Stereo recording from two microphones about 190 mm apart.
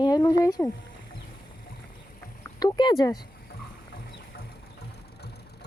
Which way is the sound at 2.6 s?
20° left (ahead or behind).